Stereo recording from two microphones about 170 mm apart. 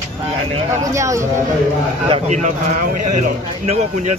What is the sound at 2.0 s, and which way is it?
A man's voice, 40° right (ahead or behind).